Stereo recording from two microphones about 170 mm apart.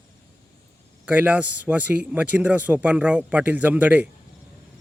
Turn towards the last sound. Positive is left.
turn(degrees=-10)  # may be behind; listen again after turning